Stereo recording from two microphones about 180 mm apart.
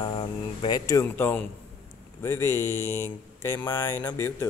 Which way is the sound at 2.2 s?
15° left (ahead or behind).